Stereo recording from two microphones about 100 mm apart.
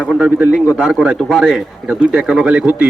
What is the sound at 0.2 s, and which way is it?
A man's voice, 10° right (ahead or behind).